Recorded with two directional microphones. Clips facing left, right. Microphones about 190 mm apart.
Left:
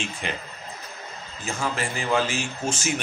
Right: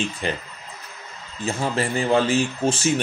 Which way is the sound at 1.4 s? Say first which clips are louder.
Right 5 dB; 35° right (ahead or behind).